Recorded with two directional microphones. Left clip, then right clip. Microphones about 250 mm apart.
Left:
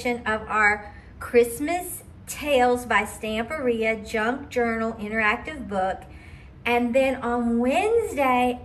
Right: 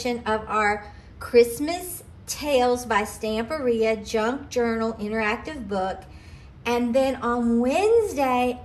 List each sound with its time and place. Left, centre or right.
0.0 s a woman's voice: centre